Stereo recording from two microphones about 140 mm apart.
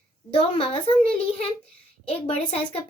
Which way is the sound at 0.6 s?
45° left (ahead or behind).